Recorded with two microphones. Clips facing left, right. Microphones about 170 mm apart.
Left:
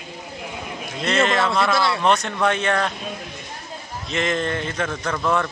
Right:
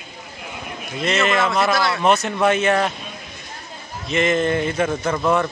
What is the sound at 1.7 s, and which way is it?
Speech, 25° left (ahead or behind).